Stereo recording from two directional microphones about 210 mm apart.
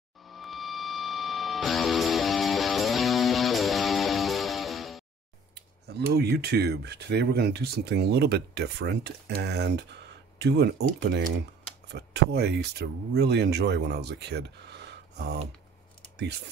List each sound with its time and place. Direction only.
0.2 s music: centre (ahead or behind)
5.5 s speech: 50° right (ahead or behind)